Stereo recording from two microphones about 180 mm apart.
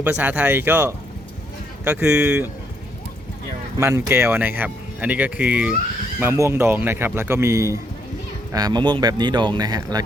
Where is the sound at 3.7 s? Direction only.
15° right (ahead or behind).